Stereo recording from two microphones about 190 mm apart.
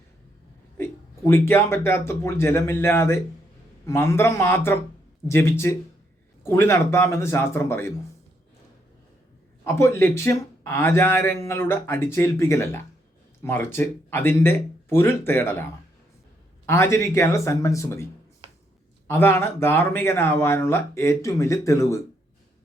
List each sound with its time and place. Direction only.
0.8 s speech: 15° left (ahead or behind)
9.6 s speech: 15° left (ahead or behind)
16.6 s speech: 15° left (ahead or behind)